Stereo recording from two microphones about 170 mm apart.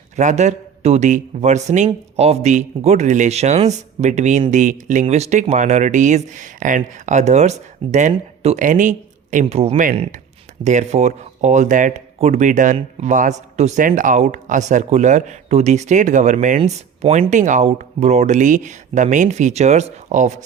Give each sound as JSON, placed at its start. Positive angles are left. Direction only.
{"t": 0.2, "sound": "speech", "side_deg": -45}